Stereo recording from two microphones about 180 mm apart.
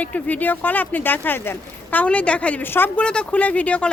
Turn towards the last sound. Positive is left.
turn(degrees=5)  # may be behind; listen again after turning